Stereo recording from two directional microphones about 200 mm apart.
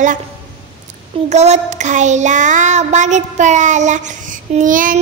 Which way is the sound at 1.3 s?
35° right (ahead or behind).